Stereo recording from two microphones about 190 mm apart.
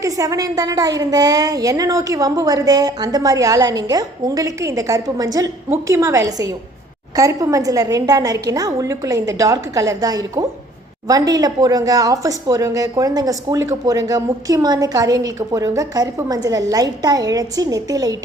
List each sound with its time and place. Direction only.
0.0 s a woman's voice: 15° right (ahead or behind)